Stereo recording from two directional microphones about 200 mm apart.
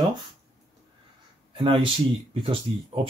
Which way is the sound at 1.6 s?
25° right (ahead or behind).